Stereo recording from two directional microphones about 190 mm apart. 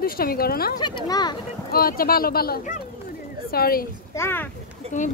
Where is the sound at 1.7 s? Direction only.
50° left (ahead or behind).